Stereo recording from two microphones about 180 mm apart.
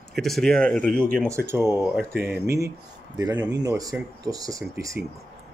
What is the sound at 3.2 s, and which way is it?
Speech, 20° right (ahead or behind).